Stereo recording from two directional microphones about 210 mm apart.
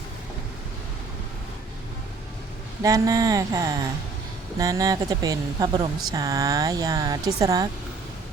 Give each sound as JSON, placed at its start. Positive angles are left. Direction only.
{"t": 2.8, "sound": "speech", "side_deg": -15}